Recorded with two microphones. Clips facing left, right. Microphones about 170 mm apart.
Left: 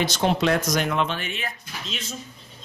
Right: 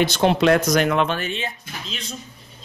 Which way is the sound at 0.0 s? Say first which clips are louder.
Right 5 dB; 65° right (ahead or behind).